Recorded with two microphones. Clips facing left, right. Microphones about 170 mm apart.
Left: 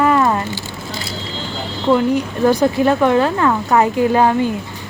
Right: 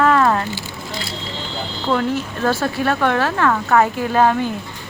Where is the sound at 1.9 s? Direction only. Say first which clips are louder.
Left 2 dB; 15° left (ahead or behind).